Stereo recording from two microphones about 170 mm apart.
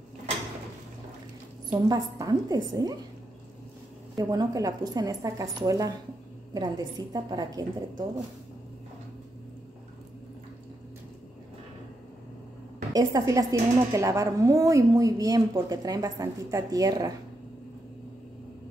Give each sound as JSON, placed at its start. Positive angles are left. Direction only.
{"t": 1.7, "sound": "speech", "side_deg": -20}
{"t": 4.2, "sound": "speech", "side_deg": -20}
{"t": 12.9, "sound": "speech", "side_deg": -20}